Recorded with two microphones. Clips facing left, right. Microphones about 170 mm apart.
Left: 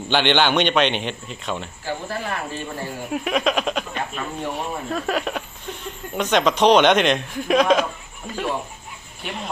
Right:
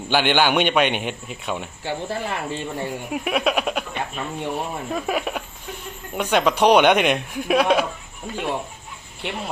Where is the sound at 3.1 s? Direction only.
5° right (ahead or behind).